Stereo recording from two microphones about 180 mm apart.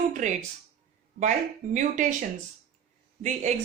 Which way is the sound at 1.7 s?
45° right (ahead or behind).